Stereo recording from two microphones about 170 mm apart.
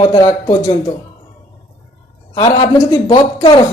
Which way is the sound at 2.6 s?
25° left (ahead or behind).